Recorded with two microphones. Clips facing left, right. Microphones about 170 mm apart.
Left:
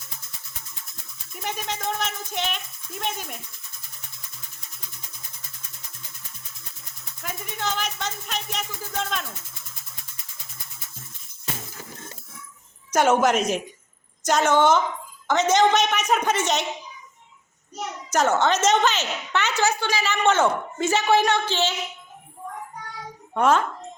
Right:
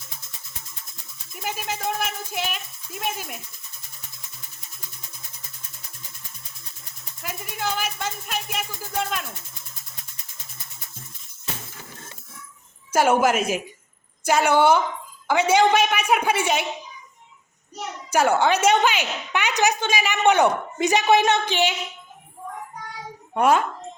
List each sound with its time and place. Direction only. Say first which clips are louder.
1.3 s speech: right 1 dB; 5° right (ahead or behind)
7.2 s a woman's voice: right 1 dB; 5° right (ahead or behind)
12.9 s a woman's voice: even; 10° right (ahead or behind)
18.1 s a woman's voice: right 2 dB; 10° right (ahead or behind)
23.3 s a woman's voice: right 1 dB; 10° right (ahead or behind)